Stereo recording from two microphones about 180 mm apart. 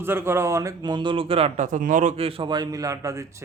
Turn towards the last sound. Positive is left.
turn(degrees=-15)  # may be behind; listen again after turning